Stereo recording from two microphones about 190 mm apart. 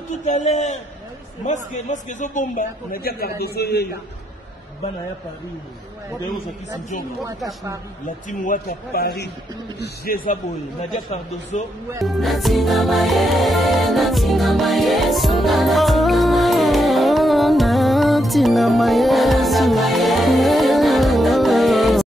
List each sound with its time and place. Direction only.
0.2 s a man's voice: 35° left (ahead or behind); by 3.9 s 55° left (ahead or behind)
8.3 s a man's voice: 50° left (ahead or behind)
12.0 s music: centre (ahead or behind)